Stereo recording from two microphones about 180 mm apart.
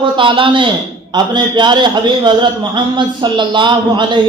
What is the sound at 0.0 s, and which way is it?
A man's voice, 25° right (ahead or behind).